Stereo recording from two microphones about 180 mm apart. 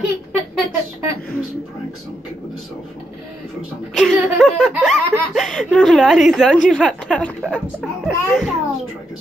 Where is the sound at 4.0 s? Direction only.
Centre (ahead or behind).